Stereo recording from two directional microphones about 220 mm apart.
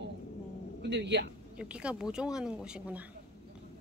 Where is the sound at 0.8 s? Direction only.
50° right (ahead or behind).